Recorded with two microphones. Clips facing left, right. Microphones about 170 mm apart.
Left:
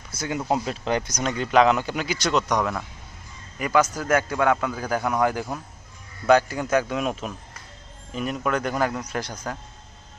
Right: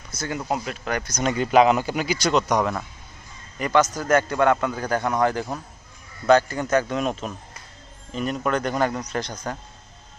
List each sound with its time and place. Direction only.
0.1 s speech: 10° left (ahead or behind)
0.5 s speech: 25° left (ahead or behind)
1.2 s speech: 5° right (ahead or behind)
3.5 s a man's voice: 10° left (ahead or behind)